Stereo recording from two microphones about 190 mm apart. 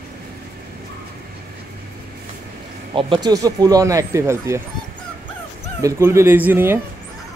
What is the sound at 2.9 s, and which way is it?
Speech, 25° right (ahead or behind).